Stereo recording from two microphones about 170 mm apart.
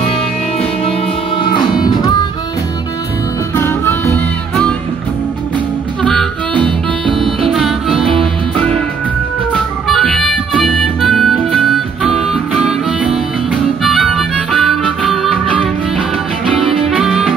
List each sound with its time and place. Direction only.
1.4 s music: 25° left (ahead or behind)
3.5 s music: 15° left (ahead or behind)
7.5 s music: centre (ahead or behind)
9.8 s harmonica: centre (ahead or behind)
16.9 s music: centre (ahead or behind)